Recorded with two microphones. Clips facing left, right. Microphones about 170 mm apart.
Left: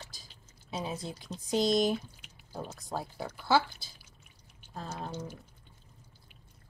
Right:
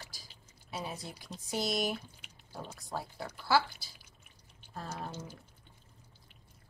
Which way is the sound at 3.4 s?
20° left (ahead or behind).